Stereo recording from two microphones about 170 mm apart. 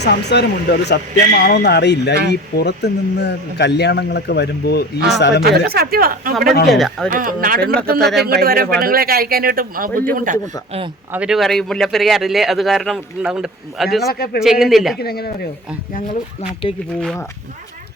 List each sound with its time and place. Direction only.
0.0 s speech: 80° left
5.4 s speech: 65° right (ahead or behind)
6.7 s speech: centre (ahead or behind)
7.1 s speech: 55° right (ahead or behind)
7.9 s speech: centre (ahead or behind)
8.2 s a man's voice: 65° right (ahead or behind)
11.1 s speech: 5° right (ahead or behind)
14.0 s speech: 65° left (ahead or behind)
14.4 s speech: centre (ahead or behind)
14.9 s speech: 65° left (ahead or behind)